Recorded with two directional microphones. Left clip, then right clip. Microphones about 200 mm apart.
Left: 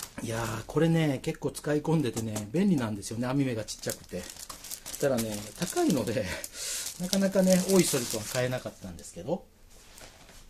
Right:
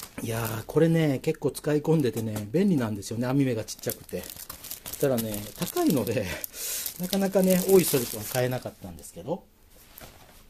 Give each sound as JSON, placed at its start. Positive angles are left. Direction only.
{"t": 0.1, "sound": "speech", "side_deg": -35}
{"t": 5.6, "sound": "speech", "side_deg": -40}
{"t": 9.2, "sound": "speech", "side_deg": -25}